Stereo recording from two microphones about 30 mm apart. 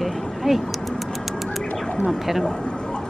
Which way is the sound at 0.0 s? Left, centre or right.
Centre.